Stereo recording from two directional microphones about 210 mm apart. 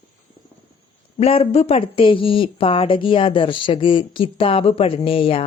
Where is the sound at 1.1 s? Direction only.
30° left (ahead or behind).